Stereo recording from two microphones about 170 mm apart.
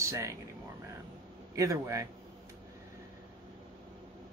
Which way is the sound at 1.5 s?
20° right (ahead or behind).